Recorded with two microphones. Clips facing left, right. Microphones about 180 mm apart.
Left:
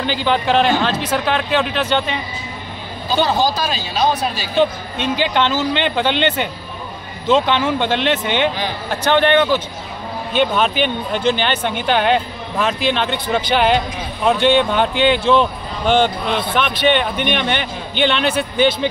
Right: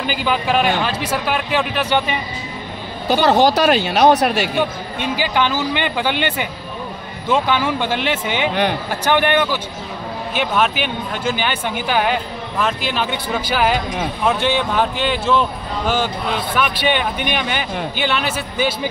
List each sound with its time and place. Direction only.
0.0 s speech: 10° right (ahead or behind)
3.1 s speech: 70° right (ahead or behind)
4.6 s speech: 10° right (ahead or behind)
16.5 s speech: 10° right (ahead or behind)